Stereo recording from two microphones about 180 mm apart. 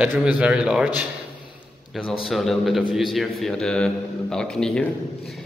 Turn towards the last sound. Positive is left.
turn(degrees=5)  # may be behind; listen again after turning